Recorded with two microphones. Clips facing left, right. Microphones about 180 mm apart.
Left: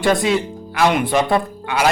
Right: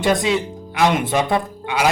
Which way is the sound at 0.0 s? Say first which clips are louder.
Left 1 dB; 20° right (ahead or behind).